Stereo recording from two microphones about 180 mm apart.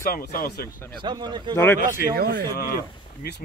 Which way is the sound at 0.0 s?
50° left (ahead or behind).